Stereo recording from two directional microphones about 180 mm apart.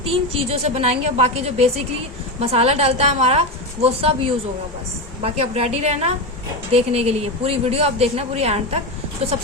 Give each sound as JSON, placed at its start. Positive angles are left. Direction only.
{"t": 0.0, "sound": "a woman's voice", "side_deg": -30}
{"t": 5.2, "sound": "a woman's voice", "side_deg": -35}